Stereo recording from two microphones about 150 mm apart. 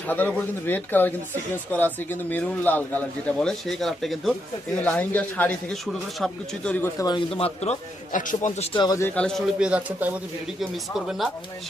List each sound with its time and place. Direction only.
0.1 s a man's voice: 10° left (ahead or behind)
6.8 s a man's voice: 25° left (ahead or behind); by 8.7 s 50° left (ahead or behind)
8.7 s a man's voice: 30° left (ahead or behind)
9.0 s a man's voice: 10° left (ahead or behind)
9.6 s speech: 10° right (ahead or behind)